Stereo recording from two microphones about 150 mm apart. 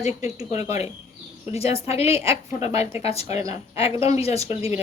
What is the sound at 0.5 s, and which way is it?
A woman's voice, 45° left (ahead or behind).